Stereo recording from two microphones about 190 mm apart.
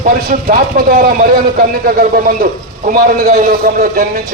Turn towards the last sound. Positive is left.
turn(degrees=-45)  # may be behind; listen again after turning